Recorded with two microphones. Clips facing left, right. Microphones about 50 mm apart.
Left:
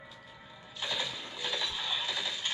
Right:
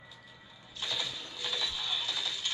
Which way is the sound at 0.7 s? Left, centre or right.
Centre.